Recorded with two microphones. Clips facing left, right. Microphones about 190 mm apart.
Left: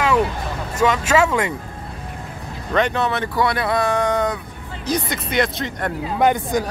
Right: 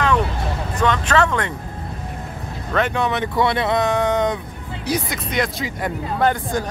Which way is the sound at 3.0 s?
20° right (ahead or behind).